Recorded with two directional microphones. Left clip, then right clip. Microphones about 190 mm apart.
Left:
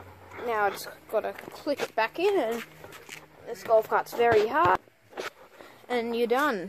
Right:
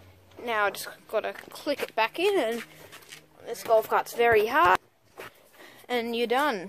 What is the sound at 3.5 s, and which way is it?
A woman's voice, 30° right (ahead or behind).